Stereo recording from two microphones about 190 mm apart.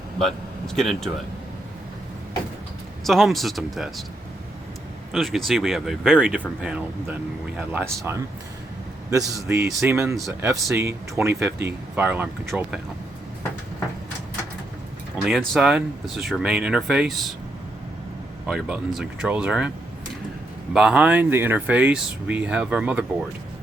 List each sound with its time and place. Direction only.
0.2 s speech: centre (ahead or behind)
3.0 s speech: centre (ahead or behind)
5.1 s speech: centre (ahead or behind)
15.2 s speech: centre (ahead or behind)
18.4 s speech: centre (ahead or behind)
20.7 s speech: 5° right (ahead or behind)